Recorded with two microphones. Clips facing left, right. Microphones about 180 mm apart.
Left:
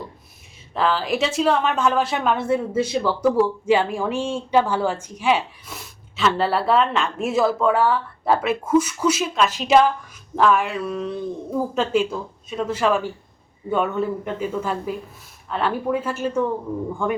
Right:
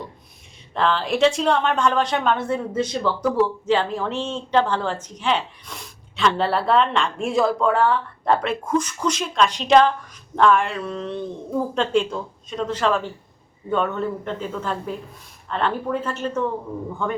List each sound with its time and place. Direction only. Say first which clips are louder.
0.7 s speech: even; 5° left (ahead or behind)